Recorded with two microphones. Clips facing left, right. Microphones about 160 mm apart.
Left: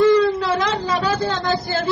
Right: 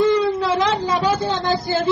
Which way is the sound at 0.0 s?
20° right (ahead or behind).